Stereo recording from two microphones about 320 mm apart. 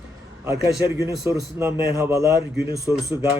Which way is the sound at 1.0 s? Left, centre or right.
Centre.